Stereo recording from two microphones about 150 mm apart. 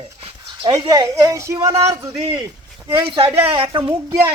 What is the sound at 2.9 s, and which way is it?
Speech, 35° right (ahead or behind).